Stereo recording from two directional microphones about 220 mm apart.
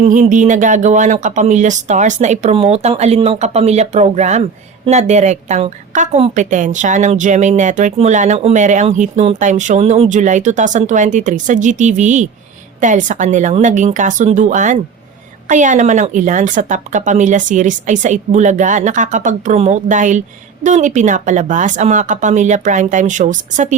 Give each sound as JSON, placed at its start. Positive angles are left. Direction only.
{"t": 0.0, "sound": "a woman's voice", "side_deg": -35}